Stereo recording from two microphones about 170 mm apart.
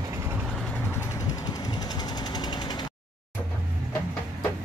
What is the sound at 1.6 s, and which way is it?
Vehicle, 25° left (ahead or behind).